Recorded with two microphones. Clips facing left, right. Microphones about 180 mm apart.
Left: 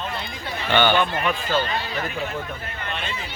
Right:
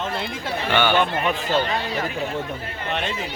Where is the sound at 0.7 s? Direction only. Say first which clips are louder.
Left 1 dB; 10° right (ahead or behind).